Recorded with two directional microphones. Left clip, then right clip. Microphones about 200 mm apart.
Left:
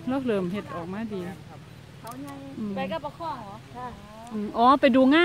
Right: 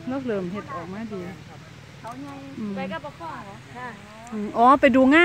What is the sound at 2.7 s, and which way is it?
Speech, 45° left (ahead or behind).